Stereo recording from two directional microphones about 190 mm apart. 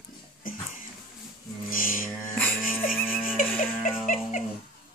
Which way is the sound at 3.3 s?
45° left (ahead or behind).